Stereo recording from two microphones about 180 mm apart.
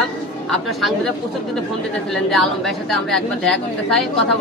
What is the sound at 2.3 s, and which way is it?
A woman's voice, centre (ahead or behind).